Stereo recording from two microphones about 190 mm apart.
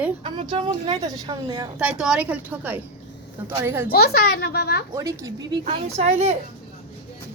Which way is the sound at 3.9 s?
55° left (ahead or behind).